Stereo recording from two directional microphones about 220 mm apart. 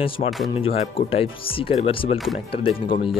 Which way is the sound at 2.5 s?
25° left (ahead or behind).